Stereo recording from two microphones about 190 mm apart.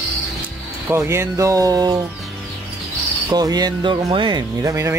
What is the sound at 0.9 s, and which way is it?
Speech, 15° right (ahead or behind).